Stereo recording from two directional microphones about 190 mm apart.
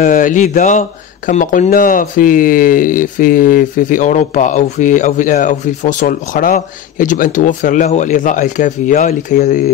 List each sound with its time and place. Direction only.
0.0 s speech: 45° left (ahead or behind)